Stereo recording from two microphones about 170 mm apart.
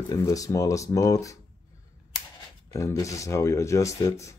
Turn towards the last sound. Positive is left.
turn(degrees=20)  # may be behind; listen again after turning